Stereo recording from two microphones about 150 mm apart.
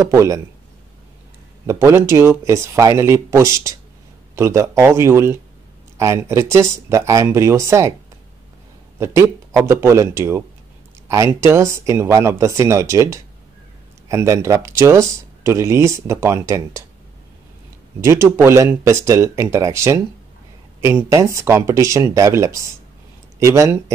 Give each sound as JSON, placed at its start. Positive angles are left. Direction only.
{"t": 0.0, "sound": "speech", "side_deg": -20}
{"t": 1.7, "sound": "speech", "side_deg": -15}
{"t": 8.9, "sound": "speech", "side_deg": -15}
{"t": 18.0, "sound": "speech", "side_deg": -20}